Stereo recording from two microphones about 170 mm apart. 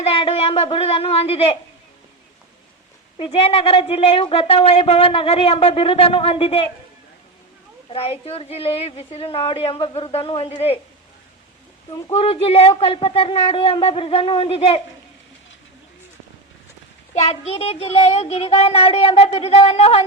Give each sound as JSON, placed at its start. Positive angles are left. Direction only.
{"t": 0.0, "sound": "speech", "side_deg": 35}
{"t": 3.2, "sound": "speech", "side_deg": 35}
{"t": 7.9, "sound": "speech", "side_deg": 35}
{"t": 12.1, "sound": "speech", "side_deg": 35}
{"t": 17.2, "sound": "speech", "side_deg": 35}